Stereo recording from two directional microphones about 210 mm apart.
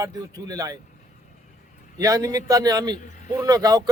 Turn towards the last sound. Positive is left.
turn(degrees=-15)  # may be behind; listen again after turning